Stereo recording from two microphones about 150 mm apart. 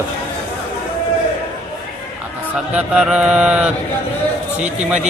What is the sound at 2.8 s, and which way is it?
Mantra, 5° right (ahead or behind).